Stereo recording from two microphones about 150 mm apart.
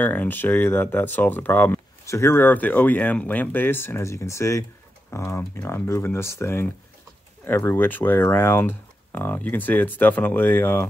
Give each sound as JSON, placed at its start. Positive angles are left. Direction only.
{"t": 0.0, "sound": "speech", "side_deg": 10}